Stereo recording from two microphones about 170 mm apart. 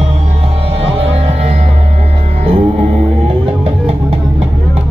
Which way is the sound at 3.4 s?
35° right (ahead or behind).